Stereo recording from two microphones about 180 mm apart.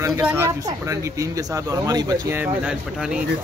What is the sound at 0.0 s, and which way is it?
Speech, 10° right (ahead or behind).